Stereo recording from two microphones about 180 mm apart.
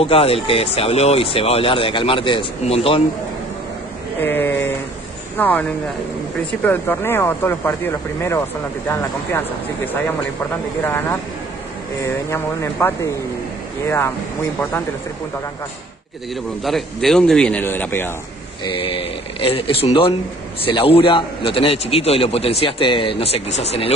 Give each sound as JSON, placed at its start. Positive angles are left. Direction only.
{"t": 0.0, "sound": "a man's voice", "side_deg": 30}
{"t": 4.2, "sound": "a sound", "side_deg": 10}
{"t": 5.4, "sound": "speech", "side_deg": 10}
{"t": 10.8, "sound": "speech", "side_deg": 10}
{"t": 16.6, "sound": "speech", "side_deg": 0}
{"t": 18.6, "sound": "a man's voice", "side_deg": 30}